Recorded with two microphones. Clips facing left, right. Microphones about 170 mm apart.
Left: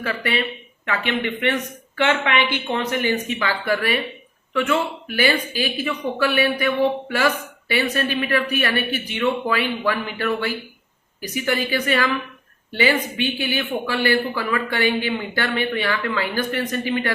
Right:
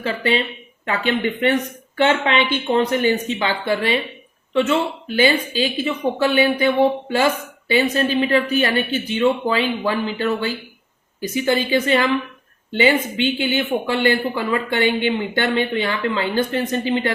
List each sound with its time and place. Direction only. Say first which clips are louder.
0.0 s speech: right 3 dB; 25° right (ahead or behind)